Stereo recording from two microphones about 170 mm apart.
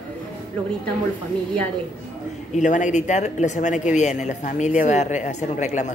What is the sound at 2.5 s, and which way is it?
Speech, 45° left (ahead or behind).